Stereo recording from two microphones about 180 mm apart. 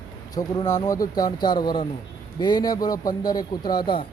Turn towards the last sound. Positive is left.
turn(degrees=25)  # may be behind; listen again after turning